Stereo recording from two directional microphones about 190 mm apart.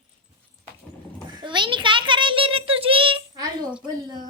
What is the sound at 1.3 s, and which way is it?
A child's voice, 25° right (ahead or behind).